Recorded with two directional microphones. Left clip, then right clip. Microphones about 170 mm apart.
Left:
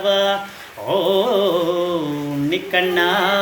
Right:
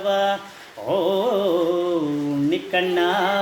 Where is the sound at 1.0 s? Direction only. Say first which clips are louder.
Left 5 dB; 45° right (ahead or behind).